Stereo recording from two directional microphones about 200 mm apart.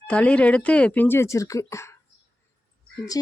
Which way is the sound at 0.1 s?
5° left (ahead or behind).